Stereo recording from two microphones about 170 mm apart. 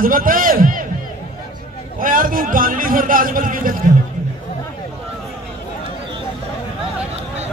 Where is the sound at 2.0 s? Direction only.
55° right (ahead or behind).